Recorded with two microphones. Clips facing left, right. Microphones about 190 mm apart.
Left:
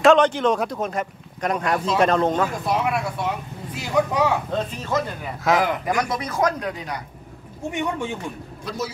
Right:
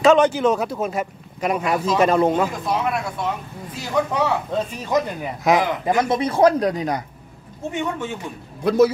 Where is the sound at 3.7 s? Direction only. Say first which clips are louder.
Even; 10° left (ahead or behind).